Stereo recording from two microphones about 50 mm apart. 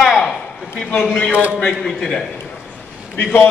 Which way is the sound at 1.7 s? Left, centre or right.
Centre.